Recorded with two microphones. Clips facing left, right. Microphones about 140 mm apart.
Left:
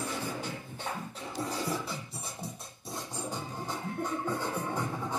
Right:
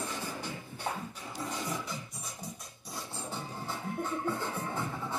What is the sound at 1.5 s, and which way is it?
Music, 30° left (ahead or behind).